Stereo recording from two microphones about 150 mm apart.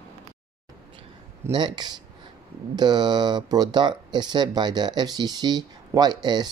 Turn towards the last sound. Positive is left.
turn(degrees=-30)  # may be behind; listen again after turning